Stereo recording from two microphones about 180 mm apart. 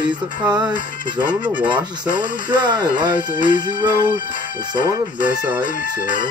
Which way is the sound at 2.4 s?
25° right (ahead or behind).